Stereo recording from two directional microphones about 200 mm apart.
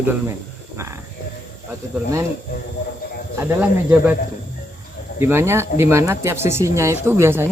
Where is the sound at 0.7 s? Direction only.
15° right (ahead or behind).